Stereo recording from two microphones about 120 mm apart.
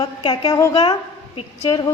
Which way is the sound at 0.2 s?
40° left (ahead or behind).